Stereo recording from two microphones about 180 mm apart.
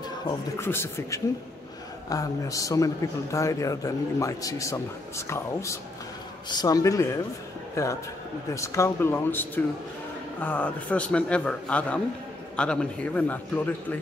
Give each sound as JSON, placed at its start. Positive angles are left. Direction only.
{"t": 0.6, "sound": "a man's voice", "side_deg": 15}